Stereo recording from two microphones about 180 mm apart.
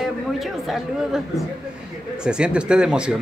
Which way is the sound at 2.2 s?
5° right (ahead or behind).